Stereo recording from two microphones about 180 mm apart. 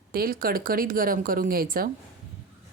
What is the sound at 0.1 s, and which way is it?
Speech, 55° right (ahead or behind).